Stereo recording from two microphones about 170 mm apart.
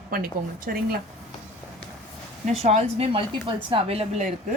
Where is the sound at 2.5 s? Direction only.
40° right (ahead or behind).